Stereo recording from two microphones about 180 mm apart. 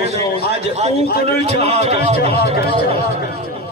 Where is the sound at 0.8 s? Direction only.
35° right (ahead or behind).